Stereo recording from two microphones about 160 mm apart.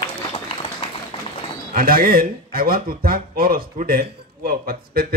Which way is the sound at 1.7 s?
65° right (ahead or behind).